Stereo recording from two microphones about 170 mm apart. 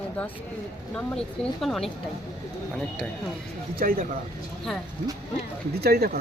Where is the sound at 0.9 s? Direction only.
5° left (ahead or behind).